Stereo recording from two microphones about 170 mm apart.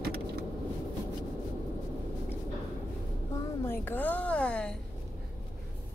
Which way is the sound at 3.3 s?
15° left (ahead or behind).